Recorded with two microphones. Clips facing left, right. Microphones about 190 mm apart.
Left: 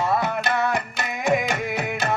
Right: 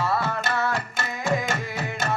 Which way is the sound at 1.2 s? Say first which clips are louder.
Left 4 dB; 15° left (ahead or behind).